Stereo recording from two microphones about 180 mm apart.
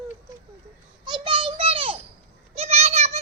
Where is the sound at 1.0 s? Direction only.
25° right (ahead or behind).